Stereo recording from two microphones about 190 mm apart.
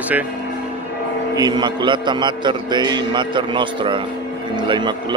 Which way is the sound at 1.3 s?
20° right (ahead or behind).